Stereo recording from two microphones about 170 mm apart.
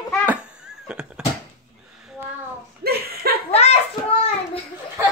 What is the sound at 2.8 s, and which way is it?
Chuckle, 65° right (ahead or behind).